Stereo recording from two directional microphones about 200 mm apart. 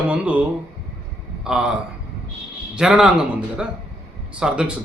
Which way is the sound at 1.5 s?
5° right (ahead or behind).